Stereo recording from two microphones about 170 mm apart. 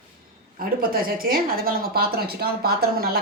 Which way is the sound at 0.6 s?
60° right (ahead or behind).